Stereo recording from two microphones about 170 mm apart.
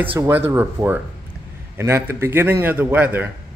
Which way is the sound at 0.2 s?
15° right (ahead or behind).